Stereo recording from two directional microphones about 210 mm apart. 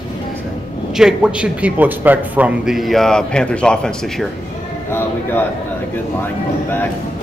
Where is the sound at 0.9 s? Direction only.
5° right (ahead or behind).